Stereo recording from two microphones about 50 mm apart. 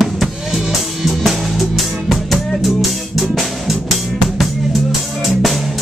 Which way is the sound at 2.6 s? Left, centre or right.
Centre.